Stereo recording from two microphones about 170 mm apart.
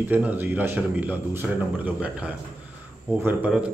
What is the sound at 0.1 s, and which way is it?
A man's voice, 10° right (ahead or behind).